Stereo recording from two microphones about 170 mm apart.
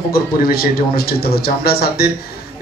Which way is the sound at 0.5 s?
65° left (ahead or behind).